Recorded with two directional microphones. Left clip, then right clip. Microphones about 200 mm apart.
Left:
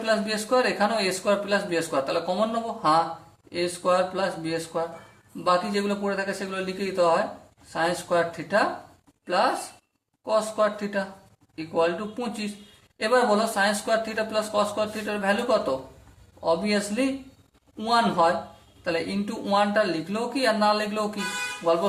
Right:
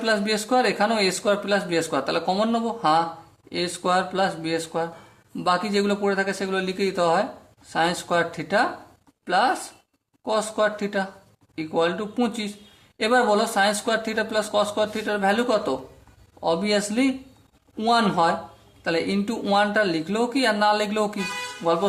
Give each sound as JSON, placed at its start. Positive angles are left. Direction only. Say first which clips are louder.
{"t": 0.0, "sound": "speech", "louder": "right 2 dB", "side_deg": -40}
{"t": 10.2, "sound": "speech", "louder": "right 1 dB", "side_deg": -40}